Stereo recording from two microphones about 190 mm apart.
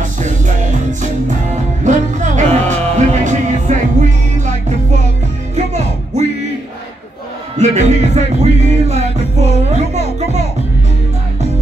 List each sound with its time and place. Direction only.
0.0 s music: 40° right (ahead or behind)
7.5 s music: 35° right (ahead or behind)